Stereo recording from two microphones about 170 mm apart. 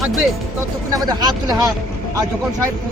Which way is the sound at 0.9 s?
25° right (ahead or behind).